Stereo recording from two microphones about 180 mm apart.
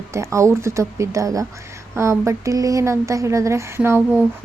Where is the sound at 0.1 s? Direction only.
15° right (ahead or behind).